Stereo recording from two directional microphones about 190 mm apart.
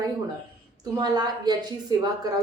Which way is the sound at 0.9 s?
20° right (ahead or behind).